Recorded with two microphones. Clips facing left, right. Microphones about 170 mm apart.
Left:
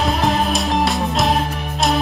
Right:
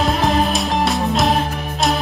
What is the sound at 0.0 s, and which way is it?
Music, centre (ahead or behind).